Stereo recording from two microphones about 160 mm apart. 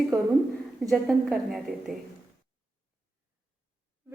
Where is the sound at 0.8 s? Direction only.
Centre (ahead or behind).